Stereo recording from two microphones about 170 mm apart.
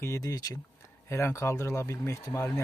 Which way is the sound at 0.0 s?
20° left (ahead or behind).